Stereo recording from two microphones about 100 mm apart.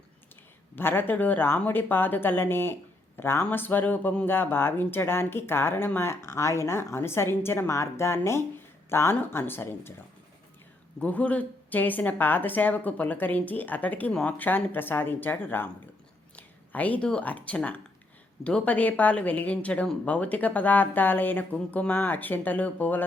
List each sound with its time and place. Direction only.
0.8 s speech: 20° left (ahead or behind)
11.0 s a woman's voice: 15° left (ahead or behind)